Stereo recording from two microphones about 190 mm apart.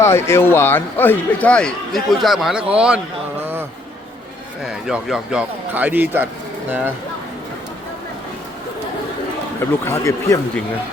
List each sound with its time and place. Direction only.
0.0 s a man's voice: 15° left (ahead or behind); by 3.0 s 5° right (ahead or behind)
3.4 s a sound: 10° right (ahead or behind)
4.6 s a man's voice: centre (ahead or behind)
9.6 s speech: 15° left (ahead or behind)